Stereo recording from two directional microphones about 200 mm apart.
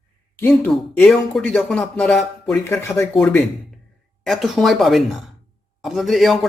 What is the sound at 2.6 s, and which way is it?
Speech, 15° left (ahead or behind).